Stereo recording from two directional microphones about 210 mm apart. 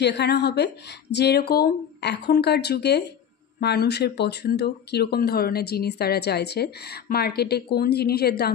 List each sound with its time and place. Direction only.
0.0 s speech: 55° left (ahead or behind)